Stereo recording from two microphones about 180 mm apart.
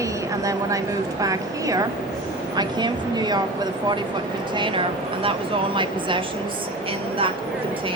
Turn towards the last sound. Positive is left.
turn(degrees=-25)  # may be behind; listen again after turning